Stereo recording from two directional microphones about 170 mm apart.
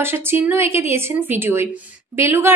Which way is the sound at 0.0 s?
15° right (ahead or behind).